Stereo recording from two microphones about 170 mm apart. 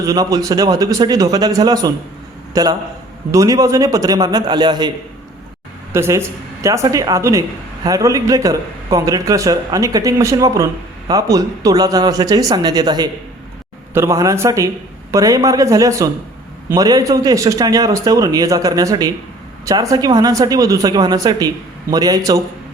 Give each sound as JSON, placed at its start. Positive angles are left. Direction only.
{"t": 0.0, "sound": "a man's voice", "side_deg": -20}
{"t": 5.9, "sound": "a man's voice", "side_deg": -15}